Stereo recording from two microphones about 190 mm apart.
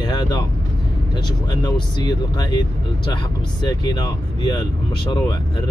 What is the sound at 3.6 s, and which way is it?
Speech, 20° left (ahead or behind).